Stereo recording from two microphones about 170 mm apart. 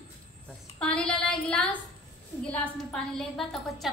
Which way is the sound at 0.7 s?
5° left (ahead or behind).